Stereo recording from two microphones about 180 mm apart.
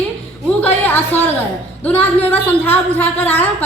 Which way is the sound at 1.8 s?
10° left (ahead or behind).